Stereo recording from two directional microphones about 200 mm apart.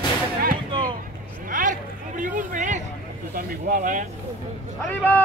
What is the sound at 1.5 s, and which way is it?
Speech, 40° right (ahead or behind).